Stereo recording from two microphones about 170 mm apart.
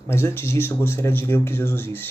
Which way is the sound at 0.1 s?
15° left (ahead or behind).